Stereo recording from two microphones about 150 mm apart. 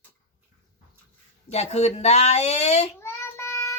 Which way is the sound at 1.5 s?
45° left (ahead or behind).